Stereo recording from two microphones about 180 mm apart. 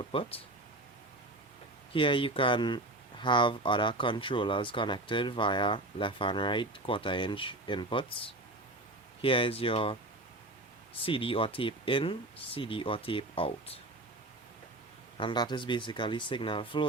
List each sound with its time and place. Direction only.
0.0 s speech: 30° left (ahead or behind)
1.9 s speech: 30° left (ahead or behind)
11.0 s speech: 30° left (ahead or behind)
15.2 s speech: 25° left (ahead or behind)